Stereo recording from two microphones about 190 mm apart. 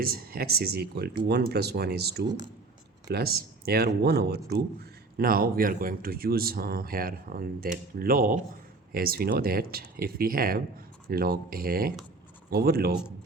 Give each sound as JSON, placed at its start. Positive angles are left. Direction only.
{"t": 0.0, "sound": "speech", "side_deg": -50}
{"t": 2.2, "sound": "speech", "side_deg": -20}
{"t": 3.1, "sound": "speech", "side_deg": -55}